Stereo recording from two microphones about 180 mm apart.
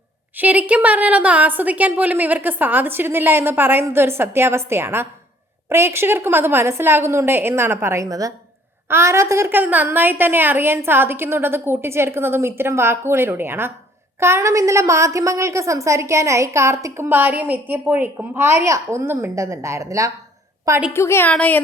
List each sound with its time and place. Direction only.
0.3 s a woman's voice: 10° right (ahead or behind)
20.9 s a woman's voice: 15° left (ahead or behind)